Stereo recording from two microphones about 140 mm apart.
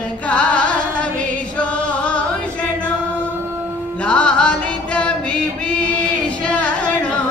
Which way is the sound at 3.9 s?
10° left (ahead or behind).